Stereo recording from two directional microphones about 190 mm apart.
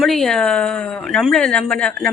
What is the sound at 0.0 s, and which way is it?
Speech, centre (ahead or behind).